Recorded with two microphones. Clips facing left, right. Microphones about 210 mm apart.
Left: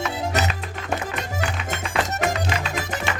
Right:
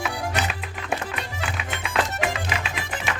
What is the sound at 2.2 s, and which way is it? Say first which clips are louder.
Music: left 3 dB; 40° left (ahead or behind).